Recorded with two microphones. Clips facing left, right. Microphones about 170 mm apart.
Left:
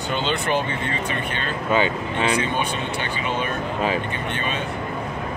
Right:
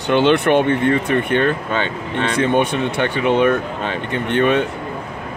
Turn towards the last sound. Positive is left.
turn(degrees=-65)  # may be behind; listen again after turning